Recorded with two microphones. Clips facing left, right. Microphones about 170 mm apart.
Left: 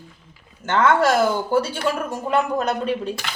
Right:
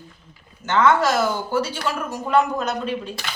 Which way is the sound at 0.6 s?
50° left (ahead or behind).